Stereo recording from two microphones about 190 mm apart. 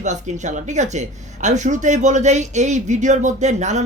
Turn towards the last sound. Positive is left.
turn(degrees=-35)  # may be behind; listen again after turning